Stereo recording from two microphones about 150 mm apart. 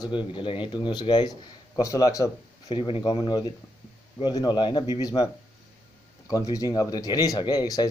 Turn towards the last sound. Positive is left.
turn(degrees=25)  # may be behind; listen again after turning